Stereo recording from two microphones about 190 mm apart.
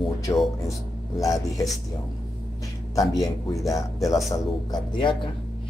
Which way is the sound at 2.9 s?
15° left (ahead or behind).